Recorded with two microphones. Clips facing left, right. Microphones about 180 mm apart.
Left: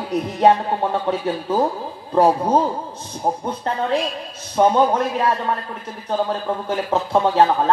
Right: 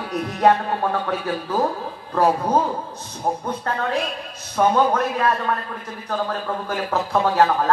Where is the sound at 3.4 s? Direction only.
25° left (ahead or behind).